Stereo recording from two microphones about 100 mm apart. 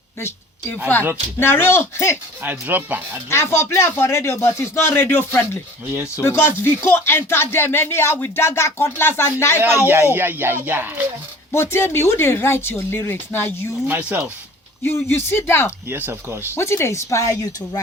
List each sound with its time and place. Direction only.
0.2 s a woman's voice: 25° left (ahead or behind)
2.4 s speech: 20° right (ahead or behind)
3.2 s speech: 25° left (ahead or behind)
5.9 s speech: 15° right (ahead or behind)
6.2 s speech: 25° left (ahead or behind)
9.6 s speech: 20° right (ahead or behind)
11.5 s speech: 25° left (ahead or behind)
13.8 s speech: 15° right (ahead or behind)
14.8 s speech: 25° left (ahead or behind)
15.9 s speech: 20° right (ahead or behind)
16.6 s speech: 25° left (ahead or behind)